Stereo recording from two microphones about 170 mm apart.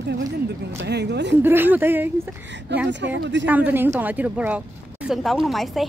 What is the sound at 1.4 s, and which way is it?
Speech, 10° right (ahead or behind).